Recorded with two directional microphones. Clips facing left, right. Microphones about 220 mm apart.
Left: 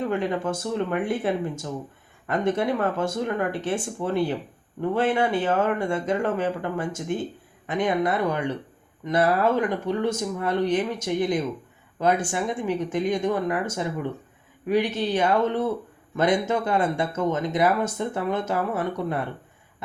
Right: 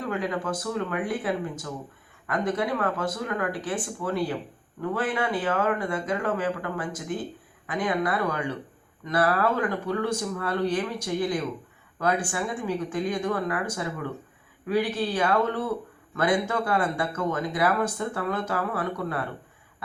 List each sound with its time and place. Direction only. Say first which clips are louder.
0.0 s speech: left 4 dB; 25° left (ahead or behind)